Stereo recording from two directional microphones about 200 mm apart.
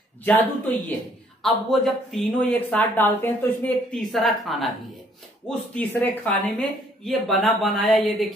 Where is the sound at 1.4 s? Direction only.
Centre (ahead or behind).